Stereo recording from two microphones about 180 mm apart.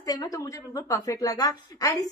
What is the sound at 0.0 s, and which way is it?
A woman's voice, 20° left (ahead or behind).